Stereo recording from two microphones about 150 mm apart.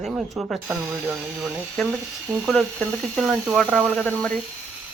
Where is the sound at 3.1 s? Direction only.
Centre (ahead or behind).